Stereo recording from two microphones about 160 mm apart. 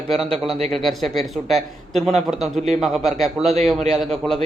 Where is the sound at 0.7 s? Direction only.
Centre (ahead or behind).